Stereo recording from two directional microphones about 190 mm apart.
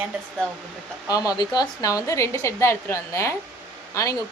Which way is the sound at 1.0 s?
20° left (ahead or behind).